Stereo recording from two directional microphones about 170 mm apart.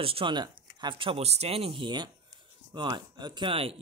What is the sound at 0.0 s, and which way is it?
Speech, 30° right (ahead or behind).